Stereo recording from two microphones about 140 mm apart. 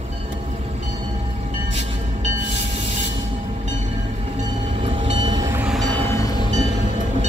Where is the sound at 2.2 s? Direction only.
55° right (ahead or behind); by 5.5 s 30° right (ahead or behind).